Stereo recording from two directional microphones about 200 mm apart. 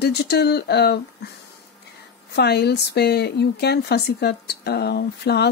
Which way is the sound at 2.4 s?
55° left (ahead or behind).